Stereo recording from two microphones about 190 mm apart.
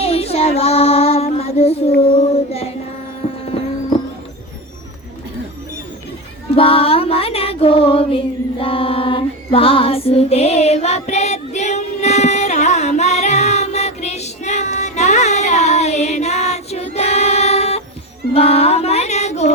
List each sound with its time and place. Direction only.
0.0 s child singing: 30° left (ahead or behind)
2.0 s female singing: 35° left (ahead or behind)
3.2 s horse: 35° left (ahead or behind)
6.6 s music: 30° left (ahead or behind)